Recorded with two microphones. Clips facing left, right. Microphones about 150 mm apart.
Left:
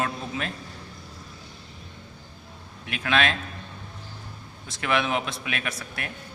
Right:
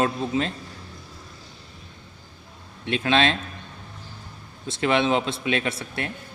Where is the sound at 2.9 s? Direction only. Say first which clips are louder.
Right 4 dB; 25° right (ahead or behind).